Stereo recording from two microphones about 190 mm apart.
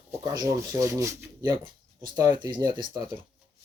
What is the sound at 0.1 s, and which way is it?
Speech, 15° right (ahead or behind).